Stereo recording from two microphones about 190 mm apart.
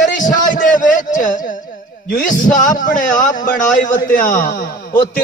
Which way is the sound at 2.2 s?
45° left (ahead or behind).